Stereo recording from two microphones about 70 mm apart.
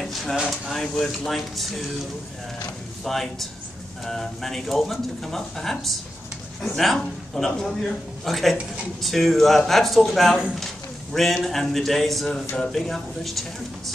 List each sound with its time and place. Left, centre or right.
0.0 s speech: centre
3.0 s speech: centre